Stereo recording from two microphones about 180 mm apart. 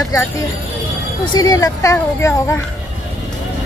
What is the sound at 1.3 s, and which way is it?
A woman's voice, 20° left (ahead or behind).